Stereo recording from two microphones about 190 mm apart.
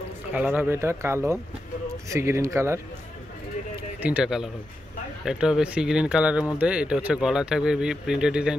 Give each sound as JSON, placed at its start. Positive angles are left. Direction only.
{"t": 0.3, "sound": "speech", "side_deg": -10}
{"t": 4.0, "sound": "speech", "side_deg": -5}